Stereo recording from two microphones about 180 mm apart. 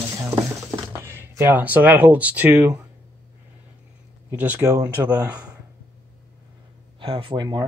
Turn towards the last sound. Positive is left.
turn(degrees=-25)  # may be behind; listen again after turning